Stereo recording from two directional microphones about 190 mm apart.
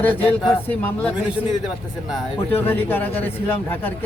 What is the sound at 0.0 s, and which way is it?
Speech, 10° left (ahead or behind).